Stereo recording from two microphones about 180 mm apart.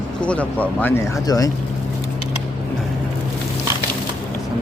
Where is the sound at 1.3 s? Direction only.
20° left (ahead or behind).